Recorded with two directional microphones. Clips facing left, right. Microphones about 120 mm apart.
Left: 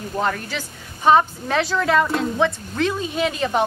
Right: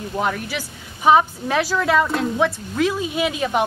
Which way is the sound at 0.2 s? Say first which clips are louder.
Even; 10° right (ahead or behind).